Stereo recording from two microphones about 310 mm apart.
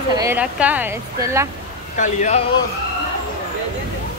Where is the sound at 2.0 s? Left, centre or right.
Left.